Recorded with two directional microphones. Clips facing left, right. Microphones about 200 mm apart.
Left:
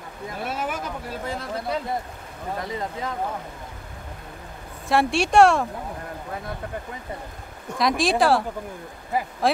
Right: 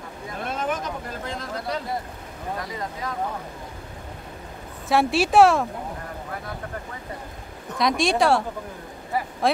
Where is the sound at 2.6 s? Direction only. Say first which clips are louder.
Left 2 dB; 25° left (ahead or behind).